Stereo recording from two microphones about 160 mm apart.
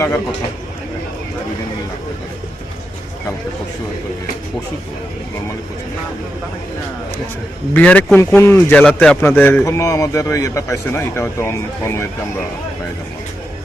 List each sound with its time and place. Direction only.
7.7 s speech: 10° left (ahead or behind)